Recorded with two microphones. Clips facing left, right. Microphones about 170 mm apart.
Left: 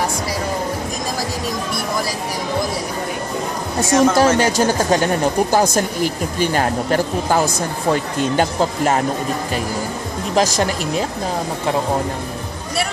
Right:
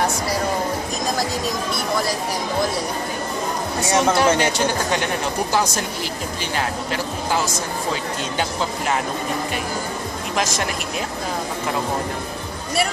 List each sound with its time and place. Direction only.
3.9 s speech: 40° left (ahead or behind)
10.3 s speech: 35° left (ahead or behind)